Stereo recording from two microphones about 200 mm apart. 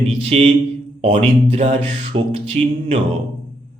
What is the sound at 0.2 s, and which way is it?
Speech, 30° right (ahead or behind).